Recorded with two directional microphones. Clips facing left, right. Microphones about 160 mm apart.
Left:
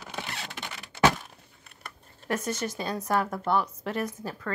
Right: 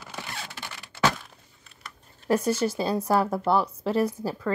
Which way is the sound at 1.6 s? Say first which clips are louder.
Left 1 dB; 55° left (ahead or behind).